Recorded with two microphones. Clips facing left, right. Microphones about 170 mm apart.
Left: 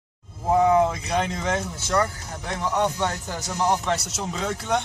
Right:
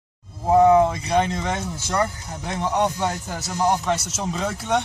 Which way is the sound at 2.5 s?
20° right (ahead or behind).